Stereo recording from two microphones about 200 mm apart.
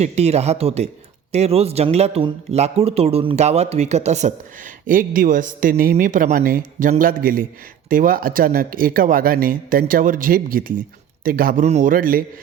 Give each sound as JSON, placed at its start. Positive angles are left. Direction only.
{"t": 0.0, "sound": "speech", "side_deg": -30}